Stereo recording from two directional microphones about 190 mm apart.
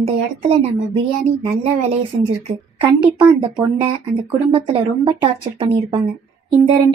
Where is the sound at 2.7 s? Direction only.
25° right (ahead or behind).